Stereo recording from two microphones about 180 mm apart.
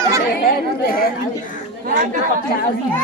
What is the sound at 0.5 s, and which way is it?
Speech, 55° left (ahead or behind).